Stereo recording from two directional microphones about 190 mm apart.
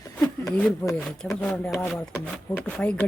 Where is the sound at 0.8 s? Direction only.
15° left (ahead or behind).